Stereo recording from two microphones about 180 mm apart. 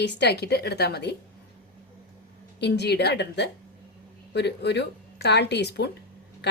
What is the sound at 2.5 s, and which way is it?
A woman's voice, 70° left (ahead or behind).